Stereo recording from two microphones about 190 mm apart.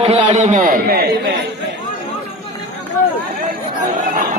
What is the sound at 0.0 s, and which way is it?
A man's voice, 35° right (ahead or behind).